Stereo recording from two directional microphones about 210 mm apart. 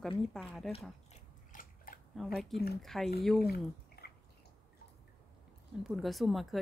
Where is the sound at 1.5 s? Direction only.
40° left (ahead or behind).